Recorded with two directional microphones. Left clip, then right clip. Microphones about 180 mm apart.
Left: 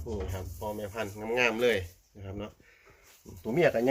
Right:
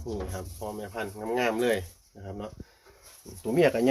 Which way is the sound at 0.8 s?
35° right (ahead or behind).